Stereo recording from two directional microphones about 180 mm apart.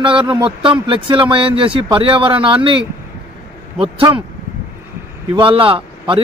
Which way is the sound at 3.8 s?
25° right (ahead or behind).